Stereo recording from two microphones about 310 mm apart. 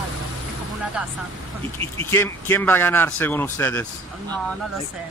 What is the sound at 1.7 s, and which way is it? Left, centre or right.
Speech, centre.